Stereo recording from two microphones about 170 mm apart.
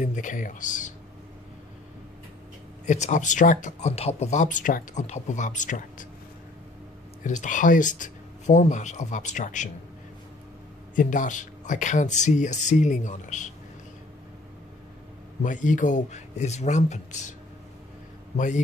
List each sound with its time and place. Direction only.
0.0 s speech: 50° left (ahead or behind)
2.9 s speech: 45° left (ahead or behind)
7.2 s speech: 50° left (ahead or behind)
11.0 s speech: 50° left (ahead or behind)
15.4 s speech: 50° left (ahead or behind)
18.3 s a man's voice: 45° left (ahead or behind)